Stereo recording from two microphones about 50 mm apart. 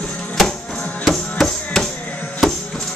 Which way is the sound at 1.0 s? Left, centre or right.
Centre.